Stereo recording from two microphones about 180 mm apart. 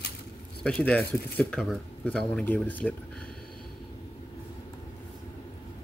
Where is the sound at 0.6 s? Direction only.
5° left (ahead or behind).